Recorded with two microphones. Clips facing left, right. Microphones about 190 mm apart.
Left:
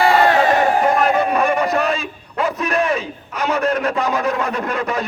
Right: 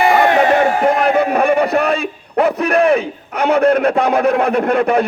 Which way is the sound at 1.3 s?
60° right (ahead or behind).